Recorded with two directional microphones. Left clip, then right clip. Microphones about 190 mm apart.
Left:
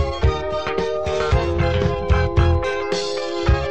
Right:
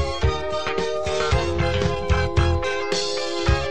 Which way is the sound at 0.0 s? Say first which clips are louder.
Left 2 dB; 35° right (ahead or behind).